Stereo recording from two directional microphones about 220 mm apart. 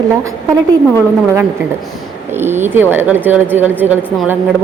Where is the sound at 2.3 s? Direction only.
10° right (ahead or behind).